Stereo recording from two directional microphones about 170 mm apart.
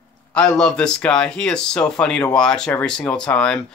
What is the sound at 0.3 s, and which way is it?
Speech, 5° left (ahead or behind).